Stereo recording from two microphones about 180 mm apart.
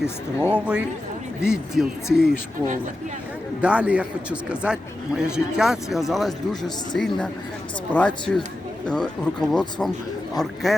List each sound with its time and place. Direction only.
0.0 s a man's voice: 5° right (ahead or behind)
3.6 s a man's voice: 5° right (ahead or behind)